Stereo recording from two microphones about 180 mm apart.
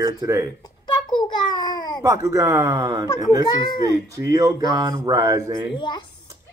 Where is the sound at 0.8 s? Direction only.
25° left (ahead or behind).